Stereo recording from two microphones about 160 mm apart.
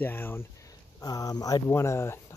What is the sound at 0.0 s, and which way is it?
Speech, 15° left (ahead or behind).